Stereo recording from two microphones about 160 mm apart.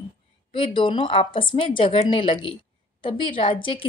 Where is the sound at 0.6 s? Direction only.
30° left (ahead or behind).